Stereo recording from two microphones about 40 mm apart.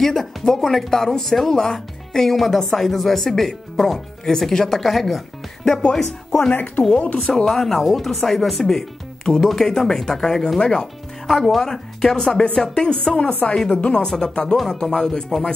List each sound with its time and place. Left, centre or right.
0.0 s speech: centre
5.7 s speech: left
5.9 s speech: centre
7.0 s speech: left
7.4 s speech: centre
11.2 s a woman's voice: centre; by 14.0 s left
14.0 s speech: centre